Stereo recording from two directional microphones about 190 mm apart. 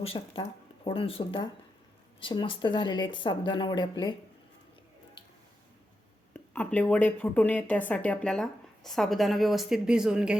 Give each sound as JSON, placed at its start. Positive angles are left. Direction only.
{"t": 0.0, "sound": "speech", "side_deg": 30}
{"t": 6.3, "sound": "speech", "side_deg": 10}